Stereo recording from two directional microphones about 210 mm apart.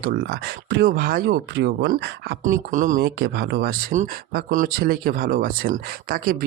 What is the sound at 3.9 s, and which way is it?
Speech, 35° right (ahead or behind).